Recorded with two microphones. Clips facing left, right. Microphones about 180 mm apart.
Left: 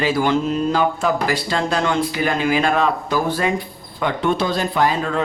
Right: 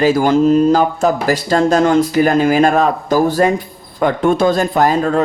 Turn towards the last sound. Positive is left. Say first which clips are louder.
# right 5 dB
turn(degrees=-45)  # may be behind; listen again after turning